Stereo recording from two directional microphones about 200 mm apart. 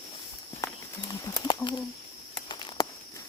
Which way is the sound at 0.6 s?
15° left (ahead or behind).